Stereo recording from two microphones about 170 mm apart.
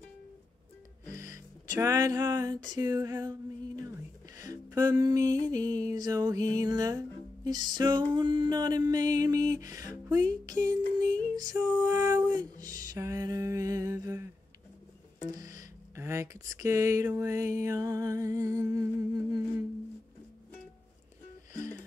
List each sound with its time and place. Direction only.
1.0 s a sound: 20° right (ahead or behind)
4.4 s music: 20° right (ahead or behind)
15.3 s music: 20° right (ahead or behind)